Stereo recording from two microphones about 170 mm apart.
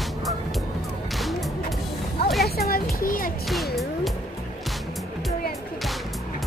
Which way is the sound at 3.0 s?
55° left (ahead or behind).